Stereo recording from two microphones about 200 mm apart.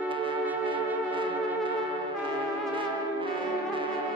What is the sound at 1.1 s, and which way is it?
Brass instrument, 25° right (ahead or behind).